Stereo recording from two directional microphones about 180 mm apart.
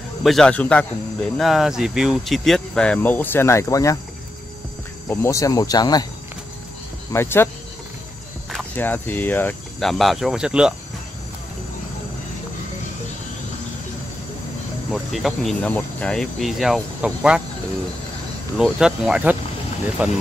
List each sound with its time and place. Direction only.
0.2 s a man's voice: centre (ahead or behind); by 4.0 s 20° left (ahead or behind)
5.1 s speech: 15° left (ahead or behind)
7.1 s a man's voice: 15° left (ahead or behind)
8.7 s speech: 10° left (ahead or behind)
14.9 s speech: centre (ahead or behind)
18.6 s speech: 5° right (ahead or behind)